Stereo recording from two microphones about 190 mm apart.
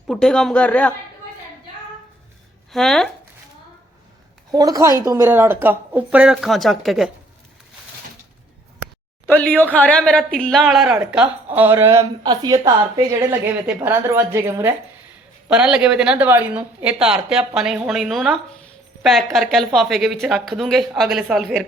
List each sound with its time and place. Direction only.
0.1 s a woman's voice: 5° left (ahead or behind)
2.7 s a woman's voice: centre (ahead or behind)
4.5 s a woman's voice: 20° right (ahead or behind); by 7.1 s centre (ahead or behind)
9.2 s a woman's voice: 10° left (ahead or behind)